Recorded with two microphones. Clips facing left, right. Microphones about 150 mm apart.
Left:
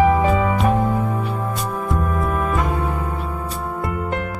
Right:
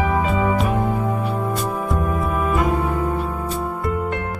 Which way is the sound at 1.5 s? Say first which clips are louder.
Right 1 dB; centre (ahead or behind).